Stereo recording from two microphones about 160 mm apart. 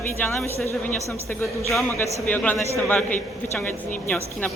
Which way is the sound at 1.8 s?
15° left (ahead or behind).